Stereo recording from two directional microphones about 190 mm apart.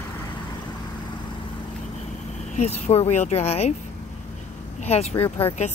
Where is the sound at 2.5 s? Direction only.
35° left (ahead or behind).